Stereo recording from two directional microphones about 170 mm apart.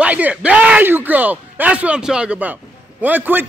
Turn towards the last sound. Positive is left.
turn(degrees=-10)  # may be behind; listen again after turning